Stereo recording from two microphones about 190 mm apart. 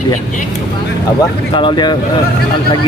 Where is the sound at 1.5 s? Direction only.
25° left (ahead or behind).